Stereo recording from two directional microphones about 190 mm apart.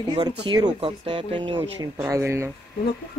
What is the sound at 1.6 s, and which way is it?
Speech, 15° right (ahead or behind).